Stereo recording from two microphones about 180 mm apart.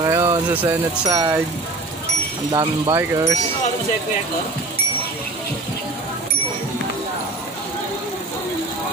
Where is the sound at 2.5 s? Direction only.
25° right (ahead or behind).